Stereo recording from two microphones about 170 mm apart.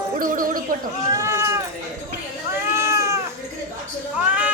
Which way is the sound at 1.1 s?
15° right (ahead or behind).